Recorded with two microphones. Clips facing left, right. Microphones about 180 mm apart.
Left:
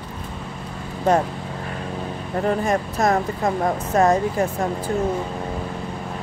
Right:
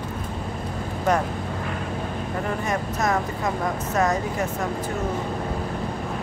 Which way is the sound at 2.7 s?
35° left (ahead or behind).